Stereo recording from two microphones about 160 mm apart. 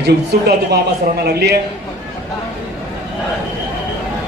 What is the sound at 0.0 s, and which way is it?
A man's voice, 90° right.